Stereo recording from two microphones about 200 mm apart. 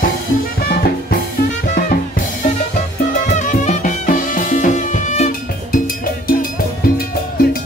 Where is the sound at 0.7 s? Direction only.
50° left (ahead or behind).